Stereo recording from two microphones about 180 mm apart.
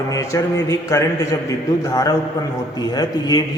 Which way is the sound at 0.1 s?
15° left (ahead or behind).